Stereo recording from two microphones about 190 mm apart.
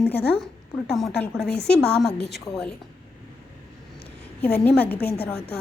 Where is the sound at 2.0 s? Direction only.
60° left (ahead or behind).